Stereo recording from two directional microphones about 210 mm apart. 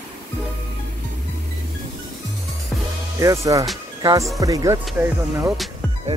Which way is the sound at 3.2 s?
15° right (ahead or behind).